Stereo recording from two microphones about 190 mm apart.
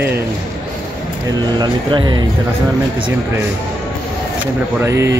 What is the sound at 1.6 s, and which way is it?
Speech, 20° right (ahead or behind).